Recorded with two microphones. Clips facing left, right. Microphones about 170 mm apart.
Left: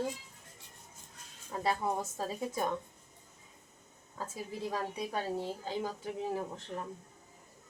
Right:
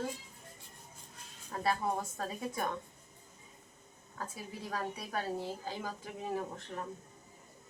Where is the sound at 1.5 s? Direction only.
20° left (ahead or behind).